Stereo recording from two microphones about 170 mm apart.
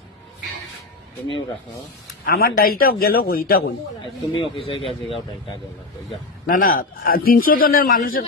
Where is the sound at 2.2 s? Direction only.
65° left (ahead or behind).